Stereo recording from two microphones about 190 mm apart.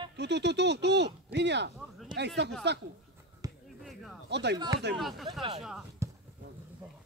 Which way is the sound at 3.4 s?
20° right (ahead or behind).